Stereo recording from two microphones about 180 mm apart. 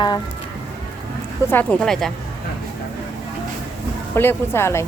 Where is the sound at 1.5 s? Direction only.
10° left (ahead or behind).